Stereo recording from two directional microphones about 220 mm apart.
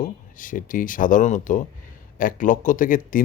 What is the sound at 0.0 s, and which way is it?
Speech, 35° left (ahead or behind).